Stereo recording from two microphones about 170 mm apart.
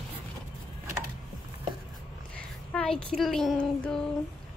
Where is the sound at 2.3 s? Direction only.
5° left (ahead or behind).